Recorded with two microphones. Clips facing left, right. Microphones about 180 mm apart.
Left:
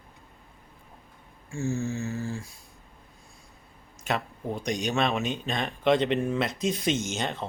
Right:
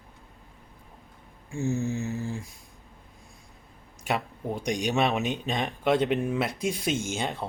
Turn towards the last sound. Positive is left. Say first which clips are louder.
# even
turn(degrees=-10)  # may be behind; listen again after turning